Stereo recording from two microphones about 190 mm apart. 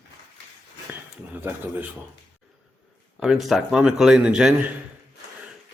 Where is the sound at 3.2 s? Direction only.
Centre (ahead or behind).